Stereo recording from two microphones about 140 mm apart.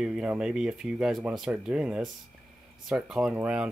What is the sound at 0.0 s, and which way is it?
Speech, 5° right (ahead or behind).